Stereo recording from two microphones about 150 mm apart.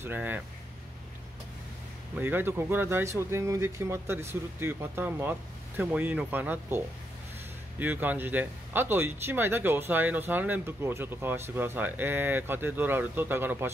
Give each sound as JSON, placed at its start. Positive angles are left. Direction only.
{"t": 0.0, "sound": "speech", "side_deg": -10}
{"t": 2.1, "sound": "speech", "side_deg": -15}
{"t": 7.8, "sound": "speech", "side_deg": -10}